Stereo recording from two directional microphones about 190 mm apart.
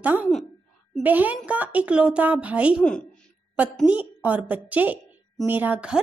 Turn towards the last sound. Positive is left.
turn(degrees=-5)  # may be behind; listen again after turning